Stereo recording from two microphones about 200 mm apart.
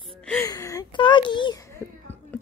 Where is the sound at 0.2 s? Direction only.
5° left (ahead or behind).